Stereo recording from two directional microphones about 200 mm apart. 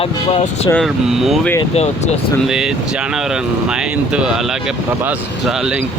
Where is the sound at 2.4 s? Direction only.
5° right (ahead or behind).